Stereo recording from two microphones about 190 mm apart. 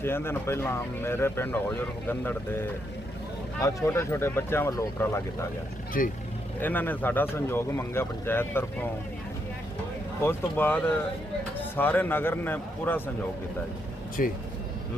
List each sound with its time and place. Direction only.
0.0 s speech: 10° left (ahead or behind)
6.0 s speech: 45° left (ahead or behind)
6.6 s speech: 10° left (ahead or behind)
10.2 s speech: 10° left (ahead or behind)
14.2 s speech: 50° left (ahead or behind)